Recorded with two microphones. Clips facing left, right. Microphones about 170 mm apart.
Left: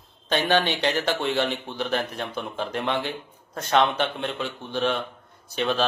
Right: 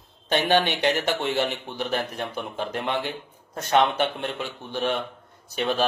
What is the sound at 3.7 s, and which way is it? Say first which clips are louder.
Speech: right 1 dB; 10° right (ahead or behind).